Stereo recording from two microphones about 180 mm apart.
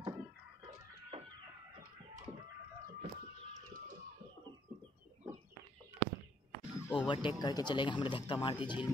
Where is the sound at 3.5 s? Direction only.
45° right (ahead or behind).